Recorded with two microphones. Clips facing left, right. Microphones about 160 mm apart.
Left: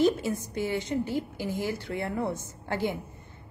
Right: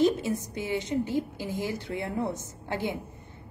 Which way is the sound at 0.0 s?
20° right (ahead or behind).